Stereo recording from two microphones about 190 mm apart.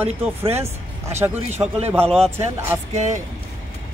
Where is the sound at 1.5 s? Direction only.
35° right (ahead or behind).